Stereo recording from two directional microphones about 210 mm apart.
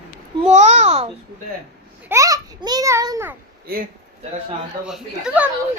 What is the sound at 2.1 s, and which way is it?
A child's voice, 15° right (ahead or behind).